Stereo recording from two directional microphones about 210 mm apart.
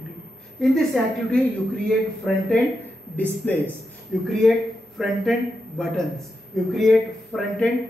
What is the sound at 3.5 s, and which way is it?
A man's voice, 5° left (ahead or behind).